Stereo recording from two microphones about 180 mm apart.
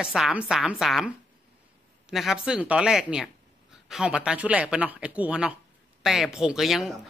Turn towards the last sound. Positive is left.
turn(degrees=0)  # may be behind; listen again after turning